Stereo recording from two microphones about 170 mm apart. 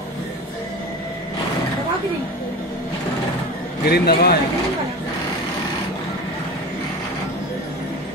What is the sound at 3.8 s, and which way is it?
Speech, 65° left (ahead or behind).